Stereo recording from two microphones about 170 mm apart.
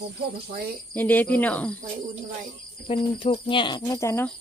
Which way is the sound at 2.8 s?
35° left (ahead or behind).